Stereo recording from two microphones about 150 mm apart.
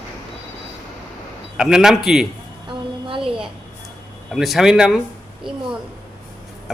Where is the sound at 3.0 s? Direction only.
35° right (ahead or behind).